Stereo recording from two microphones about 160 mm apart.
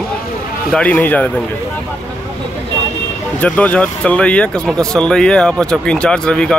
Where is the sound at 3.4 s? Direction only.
10° left (ahead or behind).